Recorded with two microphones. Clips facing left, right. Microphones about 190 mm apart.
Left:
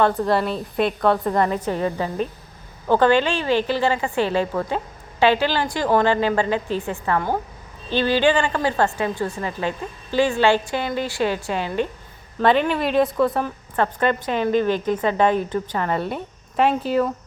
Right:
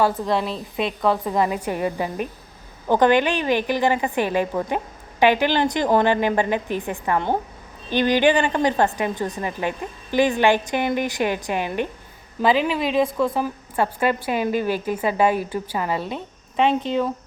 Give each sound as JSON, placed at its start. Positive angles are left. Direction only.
{"t": 0.0, "sound": "a woman's voice", "side_deg": 0}
{"t": 12.4, "sound": "a woman's voice", "side_deg": 0}